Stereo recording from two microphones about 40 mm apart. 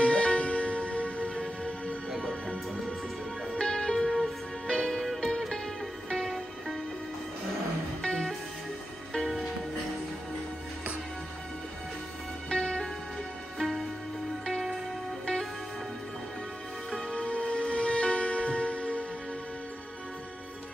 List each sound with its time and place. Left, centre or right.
0.0 s music: left
3.5 s music: left
3.9 s music: centre
8.0 s music: left
12.4 s music: left
13.6 s music: centre
17.1 s music: left